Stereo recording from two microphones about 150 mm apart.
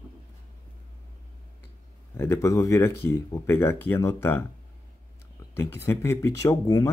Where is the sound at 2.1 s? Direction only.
20° left (ahead or behind).